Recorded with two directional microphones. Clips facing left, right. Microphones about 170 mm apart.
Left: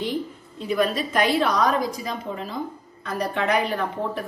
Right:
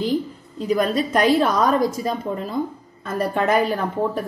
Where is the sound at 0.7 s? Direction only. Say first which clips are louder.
Right 3 dB; 40° right (ahead or behind).